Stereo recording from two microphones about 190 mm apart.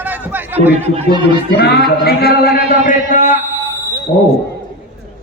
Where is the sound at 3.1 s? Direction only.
40° left (ahead or behind).